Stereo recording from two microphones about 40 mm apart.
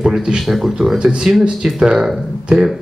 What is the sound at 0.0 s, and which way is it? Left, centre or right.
Speech, centre.